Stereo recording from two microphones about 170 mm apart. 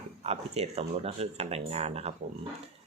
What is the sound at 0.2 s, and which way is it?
Speech, 40° right (ahead or behind).